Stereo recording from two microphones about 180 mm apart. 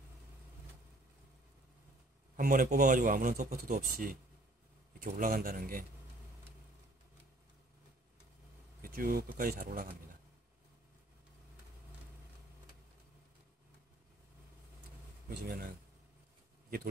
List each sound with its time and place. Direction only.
2.3 s a man's voice: 50° right (ahead or behind)
8.8 s a man's voice: 55° right (ahead or behind)
15.2 s speech: 60° right (ahead or behind)